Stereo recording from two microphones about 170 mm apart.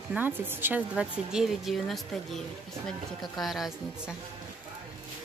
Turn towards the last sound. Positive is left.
turn(degrees=0)  # may be behind; listen again after turning